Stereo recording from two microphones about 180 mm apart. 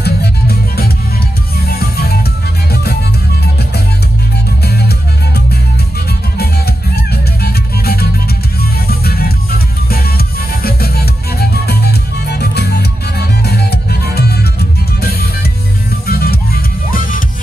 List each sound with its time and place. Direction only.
0.0 s music: 60° left (ahead or behind)
4.6 s music: 65° left (ahead or behind)